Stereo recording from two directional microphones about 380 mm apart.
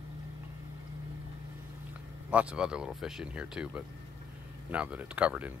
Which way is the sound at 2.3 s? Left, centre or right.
Centre.